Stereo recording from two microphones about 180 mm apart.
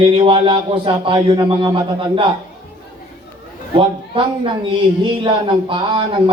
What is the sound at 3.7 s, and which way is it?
Speech, 30° right (ahead or behind).